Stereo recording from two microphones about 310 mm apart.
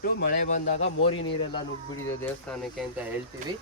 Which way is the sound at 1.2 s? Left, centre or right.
Centre.